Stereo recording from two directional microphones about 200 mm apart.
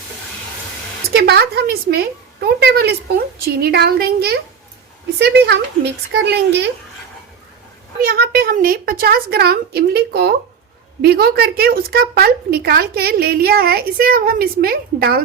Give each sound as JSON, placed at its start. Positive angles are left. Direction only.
{"t": 1.1, "sound": "a woman's voice", "side_deg": -55}
{"t": 7.9, "sound": "a woman's voice", "side_deg": -50}